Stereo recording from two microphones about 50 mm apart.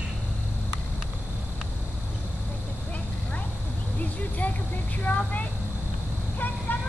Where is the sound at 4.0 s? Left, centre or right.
Left.